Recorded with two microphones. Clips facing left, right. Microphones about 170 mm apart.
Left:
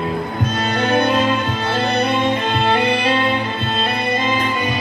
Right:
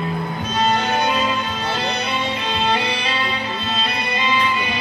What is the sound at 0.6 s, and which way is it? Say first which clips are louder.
Music: left 1 dB; 55° left (ahead or behind).